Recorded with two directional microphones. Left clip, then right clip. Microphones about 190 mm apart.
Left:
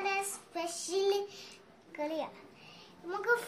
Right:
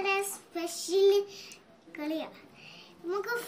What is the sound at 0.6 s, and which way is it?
Child singing, 25° left (ahead or behind).